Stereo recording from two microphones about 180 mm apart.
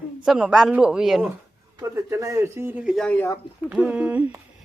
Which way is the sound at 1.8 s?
15° right (ahead or behind).